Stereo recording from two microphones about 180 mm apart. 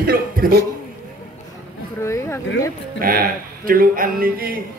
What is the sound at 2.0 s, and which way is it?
Speech, 15° left (ahead or behind).